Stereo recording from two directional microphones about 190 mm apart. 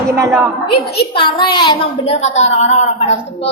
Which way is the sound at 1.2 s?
25° left (ahead or behind).